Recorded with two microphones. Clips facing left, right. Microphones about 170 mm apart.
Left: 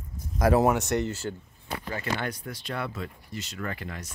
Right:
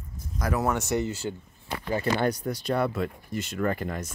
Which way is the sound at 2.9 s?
55° right (ahead or behind).